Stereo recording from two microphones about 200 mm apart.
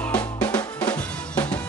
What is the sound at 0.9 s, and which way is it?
Drum, 5° left (ahead or behind).